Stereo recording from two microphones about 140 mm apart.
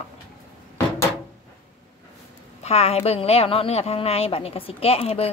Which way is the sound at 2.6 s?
50° left (ahead or behind).